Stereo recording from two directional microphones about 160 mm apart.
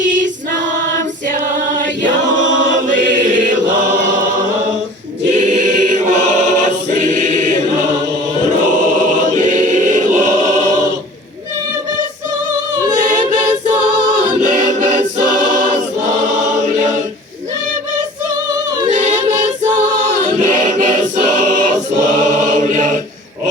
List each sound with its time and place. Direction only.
2.9 s chant: 55° right (ahead or behind)
5.5 s choir: 50° right (ahead or behind)
14.2 s choir: 50° right (ahead or behind)
20.7 s choir: 50° right (ahead or behind)
22.2 s chant: 50° right (ahead or behind)